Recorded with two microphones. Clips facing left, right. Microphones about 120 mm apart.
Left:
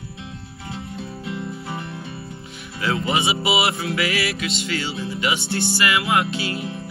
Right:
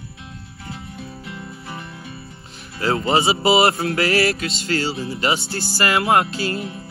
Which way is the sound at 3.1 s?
35° right (ahead or behind).